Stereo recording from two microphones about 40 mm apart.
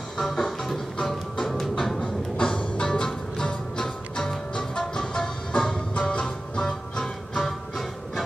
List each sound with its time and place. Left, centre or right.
0.2 s music: centre
2.4 s music: centre
5.9 s music: left
6.5 s music: centre